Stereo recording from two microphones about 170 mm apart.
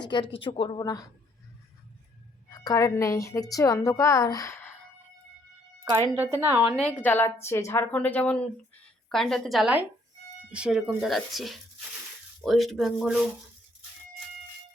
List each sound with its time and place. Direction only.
0.3 s a woman's voice: 30° left (ahead or behind)
2.5 s a woman's voice: 20° left (ahead or behind)
5.8 s speech: 25° right (ahead or behind)
6.1 s a woman's voice: 15° right (ahead or behind)
6.7 s speech: 5° left (ahead or behind)